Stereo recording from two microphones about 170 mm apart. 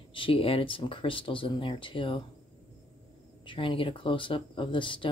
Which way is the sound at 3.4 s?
30° left (ahead or behind).